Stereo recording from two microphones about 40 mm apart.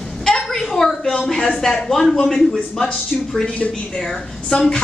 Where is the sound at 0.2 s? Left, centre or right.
Centre.